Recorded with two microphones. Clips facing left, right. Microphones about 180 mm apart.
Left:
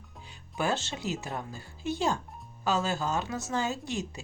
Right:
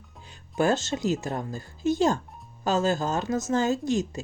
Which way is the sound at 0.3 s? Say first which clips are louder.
Right 7 dB; 45° right (ahead or behind).